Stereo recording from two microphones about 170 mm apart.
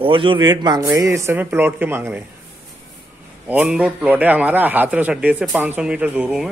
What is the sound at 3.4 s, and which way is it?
A man's voice, 10° right (ahead or behind).